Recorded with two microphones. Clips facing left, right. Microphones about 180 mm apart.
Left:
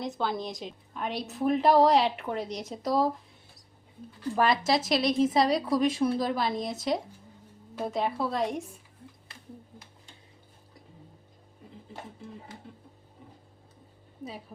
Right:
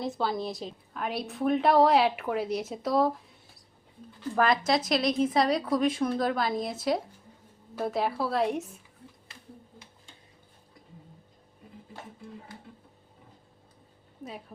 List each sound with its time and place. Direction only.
0.2 s a woman's voice: centre (ahead or behind)
4.4 s speech: 25° left (ahead or behind)
4.7 s a woman's voice: centre (ahead or behind)